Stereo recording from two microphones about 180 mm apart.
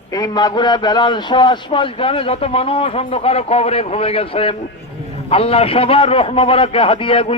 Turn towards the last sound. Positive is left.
turn(degrees=30)  # may be behind; listen again after turning